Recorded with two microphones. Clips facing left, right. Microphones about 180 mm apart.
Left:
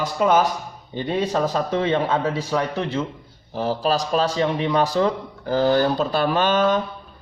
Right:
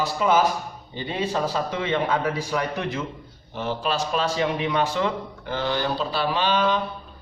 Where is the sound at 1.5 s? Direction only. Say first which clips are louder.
Left 4 dB; 35° left (ahead or behind).